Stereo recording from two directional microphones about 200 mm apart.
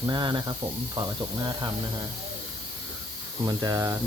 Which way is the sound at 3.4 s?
20° right (ahead or behind).